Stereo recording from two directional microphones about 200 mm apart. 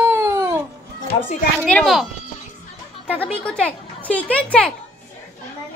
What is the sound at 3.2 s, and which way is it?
Speech, 5° left (ahead or behind).